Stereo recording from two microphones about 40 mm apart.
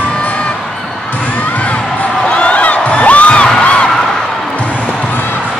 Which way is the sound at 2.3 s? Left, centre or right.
Left.